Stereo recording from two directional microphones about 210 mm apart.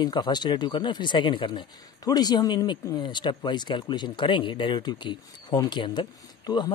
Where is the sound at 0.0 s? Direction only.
20° left (ahead or behind).